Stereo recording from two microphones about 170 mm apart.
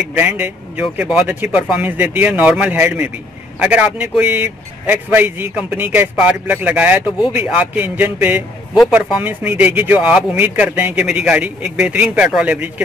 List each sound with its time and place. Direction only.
0.1 s speech: 10° right (ahead or behind)